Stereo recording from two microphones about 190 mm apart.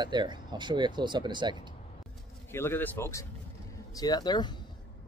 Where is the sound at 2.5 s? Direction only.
10° left (ahead or behind).